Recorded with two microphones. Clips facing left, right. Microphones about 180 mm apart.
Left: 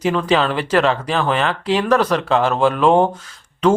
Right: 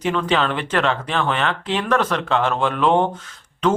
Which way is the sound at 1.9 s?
35° left (ahead or behind).